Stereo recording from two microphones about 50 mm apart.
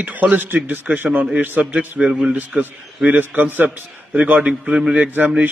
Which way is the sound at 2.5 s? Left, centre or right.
Right.